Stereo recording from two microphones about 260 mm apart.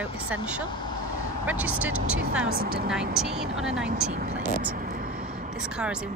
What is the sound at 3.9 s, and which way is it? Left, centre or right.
Vehicle, right.